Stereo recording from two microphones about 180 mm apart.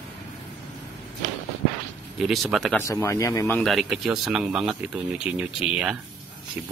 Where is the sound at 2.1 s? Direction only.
Centre (ahead or behind).